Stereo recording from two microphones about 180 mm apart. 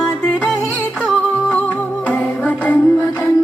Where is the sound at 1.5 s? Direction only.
5° left (ahead or behind).